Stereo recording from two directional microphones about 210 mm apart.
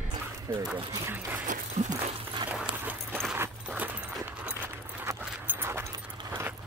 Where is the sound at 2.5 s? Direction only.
10° right (ahead or behind).